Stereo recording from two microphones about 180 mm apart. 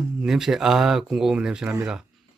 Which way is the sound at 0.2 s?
Centre (ahead or behind).